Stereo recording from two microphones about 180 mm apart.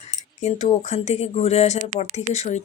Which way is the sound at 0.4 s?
40° left (ahead or behind).